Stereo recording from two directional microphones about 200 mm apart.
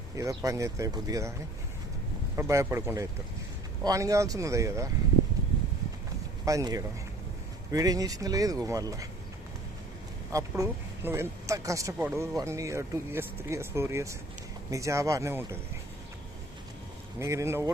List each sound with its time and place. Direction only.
0.2 s speech: 15° right (ahead or behind)
2.3 s speech: 15° right (ahead or behind)
6.4 s speech: 15° right (ahead or behind)
10.3 s speech: 15° right (ahead or behind)
17.2 s speech: 15° right (ahead or behind)